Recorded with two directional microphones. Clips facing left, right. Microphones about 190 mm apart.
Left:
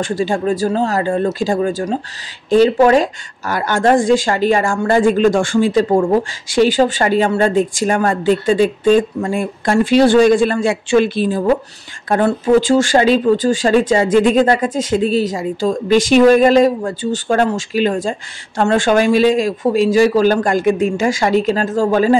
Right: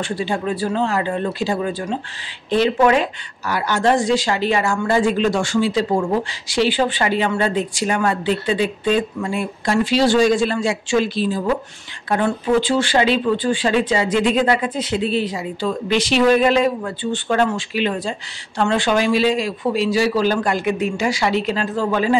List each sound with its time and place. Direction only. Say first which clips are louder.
0.0 s a woman's voice: left 5 dB; 45° left (ahead or behind)
12.1 s a woman's voice: left 5 dB; 40° left (ahead or behind)